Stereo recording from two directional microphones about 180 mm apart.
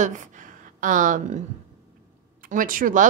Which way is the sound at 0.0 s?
45° right (ahead or behind).